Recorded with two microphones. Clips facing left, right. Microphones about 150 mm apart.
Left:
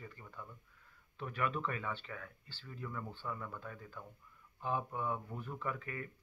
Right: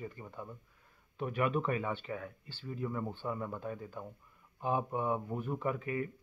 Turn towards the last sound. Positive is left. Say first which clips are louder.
# right 7 dB
turn(degrees=-20)  # may be behind; listen again after turning